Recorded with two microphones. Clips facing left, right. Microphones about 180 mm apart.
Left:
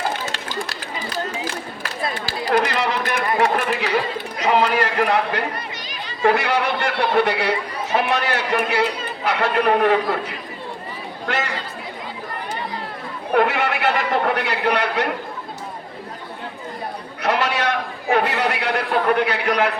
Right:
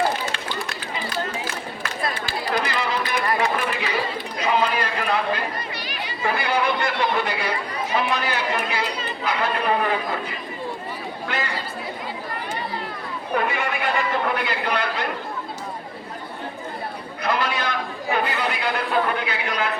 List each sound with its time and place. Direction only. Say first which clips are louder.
0.3 s run: left 1 dB; 40° left (ahead or behind)
2.6 s a sound: left 3 dB; 70° left (ahead or behind)
3.4 s chatter: left 4 dB; 70° left (ahead or behind)
4.4 s run: left 4 dB; 70° left (ahead or behind)
6.2 s a man's voice: left 4 dB; 75° left (ahead or behind)
13.3 s a man's voice: left 6 dB; 70° left (ahead or behind)
17.2 s a man's voice: left 4 dB; 75° left (ahead or behind)